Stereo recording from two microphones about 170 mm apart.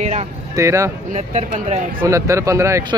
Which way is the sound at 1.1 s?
45° right (ahead or behind).